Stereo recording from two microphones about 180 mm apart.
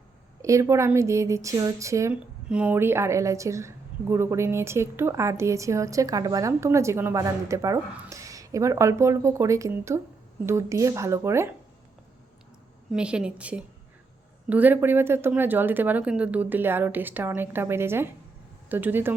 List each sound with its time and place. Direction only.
0.4 s speech: 15° right (ahead or behind)
12.9 s a woman's voice: 5° right (ahead or behind)